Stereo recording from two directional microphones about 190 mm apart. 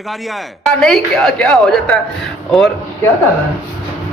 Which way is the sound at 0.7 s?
Centre (ahead or behind).